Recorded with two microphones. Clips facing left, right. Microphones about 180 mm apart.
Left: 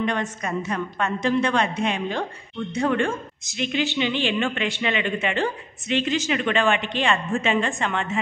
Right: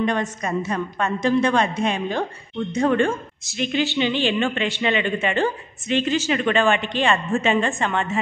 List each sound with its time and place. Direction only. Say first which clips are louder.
0.0 s speech: right 3 dB; 40° right (ahead or behind)